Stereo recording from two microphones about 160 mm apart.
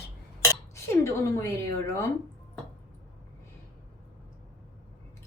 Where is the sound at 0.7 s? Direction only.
15° left (ahead or behind).